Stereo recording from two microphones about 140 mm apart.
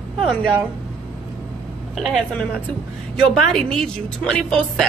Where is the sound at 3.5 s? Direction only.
Centre (ahead or behind).